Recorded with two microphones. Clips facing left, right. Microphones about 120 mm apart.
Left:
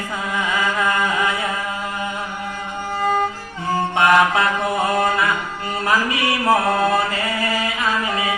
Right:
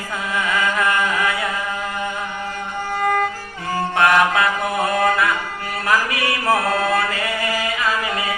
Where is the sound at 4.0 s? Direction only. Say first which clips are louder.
Even; 20° left (ahead or behind).